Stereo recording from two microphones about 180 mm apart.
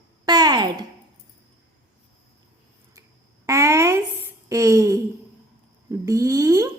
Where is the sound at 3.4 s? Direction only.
15° right (ahead or behind).